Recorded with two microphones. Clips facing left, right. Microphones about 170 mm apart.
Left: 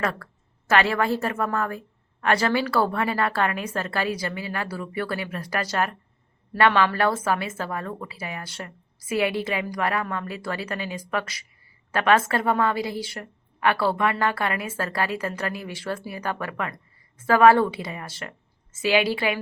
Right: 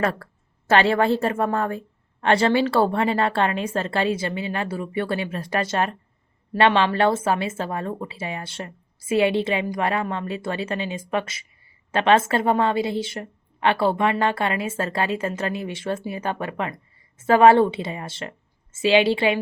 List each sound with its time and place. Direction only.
0.0 s a woman's voice: 30° right (ahead or behind)